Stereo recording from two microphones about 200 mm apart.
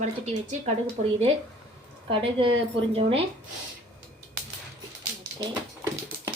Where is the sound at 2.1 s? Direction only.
25° right (ahead or behind).